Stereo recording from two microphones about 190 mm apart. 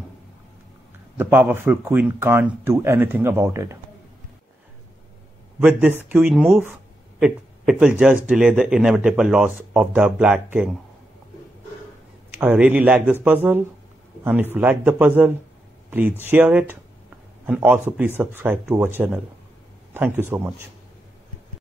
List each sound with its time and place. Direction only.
1.1 s speech: 10° right (ahead or behind)
5.6 s speech: 10° right (ahead or behind)
12.4 s speech: 10° right (ahead or behind)
19.9 s speech: 10° right (ahead or behind)